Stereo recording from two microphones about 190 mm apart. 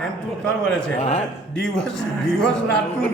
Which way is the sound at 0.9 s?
35° left (ahead or behind).